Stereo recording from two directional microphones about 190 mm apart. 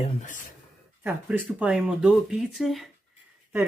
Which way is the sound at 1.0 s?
10° right (ahead or behind).